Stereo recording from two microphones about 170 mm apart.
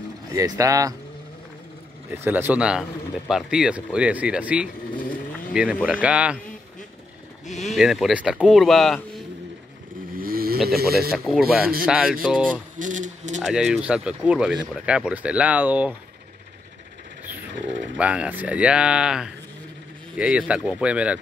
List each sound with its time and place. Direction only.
0.3 s speech: 20° right (ahead or behind)
2.0 s speech: 10° right (ahead or behind)
4.9 s vehicle: 50° left (ahead or behind)
5.5 s speech: 5° right (ahead or behind)
7.4 s speech: 40° left (ahead or behind)
7.7 s speech: centre (ahead or behind)
10.1 s vehicle: 60° right (ahead or behind)
10.8 s speech: 65° right (ahead or behind)
11.2 s speech: centre (ahead or behind)
12.7 s speech: 50° right (ahead or behind)
13.4 s speech: centre (ahead or behind)
17.9 s speech: 5° right (ahead or behind)